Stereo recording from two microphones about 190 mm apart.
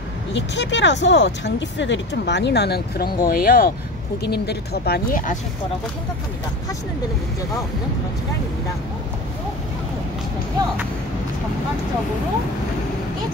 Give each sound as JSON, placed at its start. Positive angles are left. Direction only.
{"t": 0.3, "sound": "speech", "side_deg": 70}